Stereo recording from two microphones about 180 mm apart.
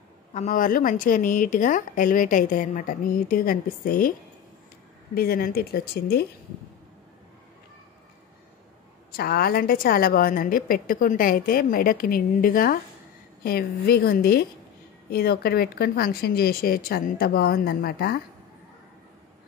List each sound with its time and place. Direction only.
0.3 s speech: 45° left (ahead or behind)
5.1 s speech: 55° left (ahead or behind)
9.1 s speech: 55° left (ahead or behind)